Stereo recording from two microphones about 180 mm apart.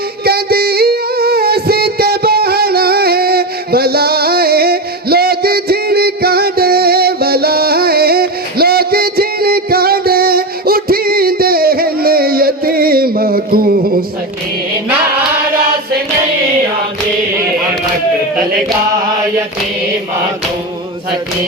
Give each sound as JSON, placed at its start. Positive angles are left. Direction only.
{"t": 0.3, "sound": "music", "side_deg": -60}